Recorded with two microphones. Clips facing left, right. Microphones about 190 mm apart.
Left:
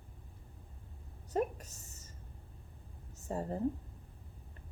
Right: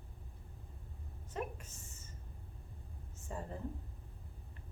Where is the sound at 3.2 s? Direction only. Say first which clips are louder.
Left 7 dB; 40° left (ahead or behind).